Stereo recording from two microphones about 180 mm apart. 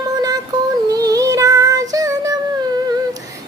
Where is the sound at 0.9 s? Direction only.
20° right (ahead or behind).